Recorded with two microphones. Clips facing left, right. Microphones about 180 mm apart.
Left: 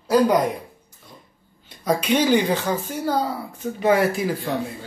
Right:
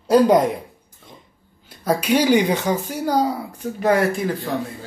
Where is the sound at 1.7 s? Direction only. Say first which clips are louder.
Right 2 dB; 5° right (ahead or behind).